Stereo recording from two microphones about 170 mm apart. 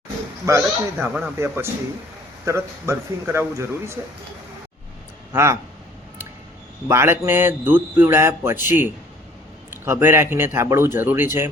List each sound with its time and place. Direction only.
0.4 s speech: 15° right (ahead or behind)
5.3 s speech: 15° right (ahead or behind)
6.8 s speech: 15° right (ahead or behind)